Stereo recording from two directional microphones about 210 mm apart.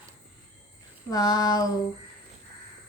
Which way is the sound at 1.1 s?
20° left (ahead or behind).